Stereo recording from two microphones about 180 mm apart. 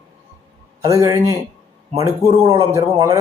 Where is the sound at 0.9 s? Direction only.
20° right (ahead or behind).